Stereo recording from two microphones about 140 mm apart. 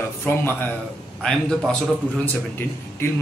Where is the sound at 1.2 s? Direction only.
5° left (ahead or behind).